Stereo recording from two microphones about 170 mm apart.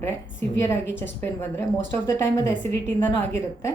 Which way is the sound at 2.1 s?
15° left (ahead or behind).